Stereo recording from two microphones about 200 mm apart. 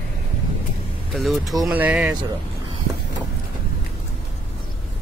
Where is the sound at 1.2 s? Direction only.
Centre (ahead or behind).